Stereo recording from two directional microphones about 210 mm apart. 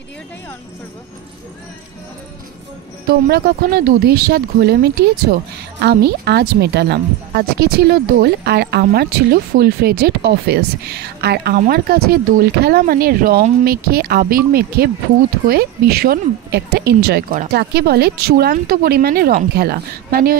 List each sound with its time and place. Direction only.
3.3 s speech: 50° right (ahead or behind)